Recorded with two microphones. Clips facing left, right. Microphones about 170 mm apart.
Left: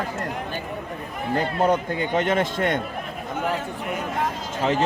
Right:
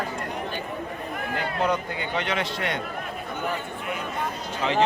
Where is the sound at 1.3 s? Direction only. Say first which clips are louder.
Left 5 dB; 45° left (ahead or behind).